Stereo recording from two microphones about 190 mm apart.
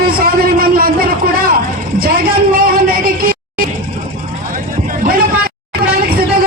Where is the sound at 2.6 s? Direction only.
50° right (ahead or behind).